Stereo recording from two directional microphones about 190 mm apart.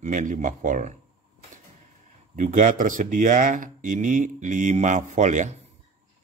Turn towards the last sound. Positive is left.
turn(degrees=-40)  # may be behind; listen again after turning